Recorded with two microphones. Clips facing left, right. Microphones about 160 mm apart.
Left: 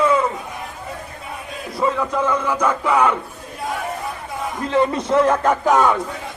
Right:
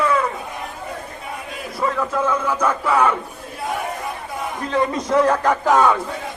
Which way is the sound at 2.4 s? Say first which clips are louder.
Left 1 dB; 10° left (ahead or behind).